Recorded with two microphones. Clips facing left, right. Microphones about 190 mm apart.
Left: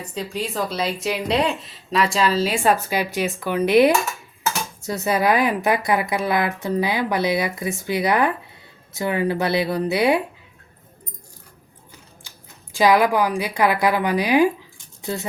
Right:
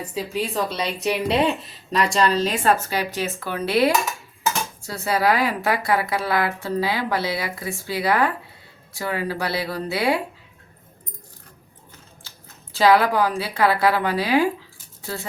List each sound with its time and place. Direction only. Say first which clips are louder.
0.1 s a woman's voice: right 1 dB; 5° right (ahead or behind); by 10.2 s 20° left (ahead or behind)
12.3 s a sound: left 1 dB; 15° left (ahead or behind)
12.7 s a woman's voice: even; 15° left (ahead or behind)